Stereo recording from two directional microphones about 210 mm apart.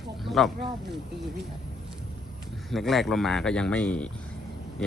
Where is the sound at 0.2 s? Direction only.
Centre (ahead or behind).